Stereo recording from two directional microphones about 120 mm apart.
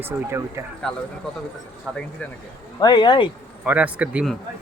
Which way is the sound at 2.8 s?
40° left (ahead or behind).